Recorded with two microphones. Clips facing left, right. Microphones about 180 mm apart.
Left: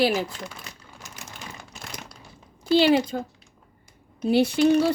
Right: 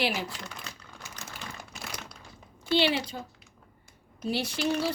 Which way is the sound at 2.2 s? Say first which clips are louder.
Left 2 dB; 40° left (ahead or behind).